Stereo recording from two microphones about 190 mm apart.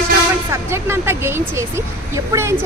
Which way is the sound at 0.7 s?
15° right (ahead or behind).